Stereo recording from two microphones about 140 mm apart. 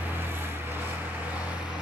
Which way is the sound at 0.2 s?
15° right (ahead or behind).